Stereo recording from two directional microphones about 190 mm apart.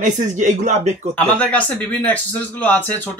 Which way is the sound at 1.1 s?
5° left (ahead or behind).